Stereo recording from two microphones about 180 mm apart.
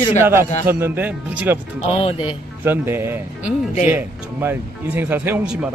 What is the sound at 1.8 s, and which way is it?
Speech, 30° left (ahead or behind).